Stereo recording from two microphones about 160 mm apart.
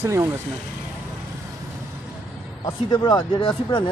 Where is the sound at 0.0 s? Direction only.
15° right (ahead or behind).